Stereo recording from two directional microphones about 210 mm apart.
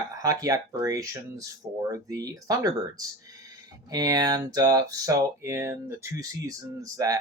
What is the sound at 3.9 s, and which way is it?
Speech, 20° right (ahead or behind).